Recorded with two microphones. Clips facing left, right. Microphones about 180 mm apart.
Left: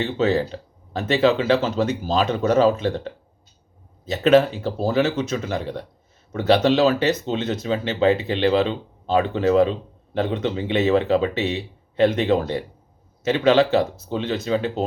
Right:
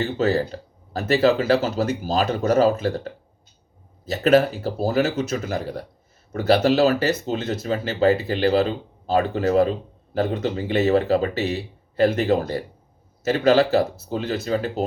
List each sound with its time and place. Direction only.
0.0 s speech: 40° right (ahead or behind)
4.9 s speech: 40° right (ahead or behind)
11.3 s speech: centre (ahead or behind)
11.9 s speech: 40° right (ahead or behind)